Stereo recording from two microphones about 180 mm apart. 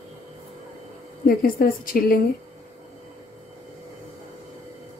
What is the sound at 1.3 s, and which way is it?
Speech, 55° left (ahead or behind).